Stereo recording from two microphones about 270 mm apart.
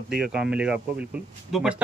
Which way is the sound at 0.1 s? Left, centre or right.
Centre.